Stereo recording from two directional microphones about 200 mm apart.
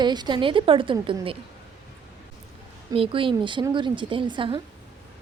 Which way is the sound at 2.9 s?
25° right (ahead or behind).